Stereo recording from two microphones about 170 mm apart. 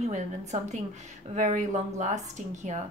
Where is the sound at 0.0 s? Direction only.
45° right (ahead or behind).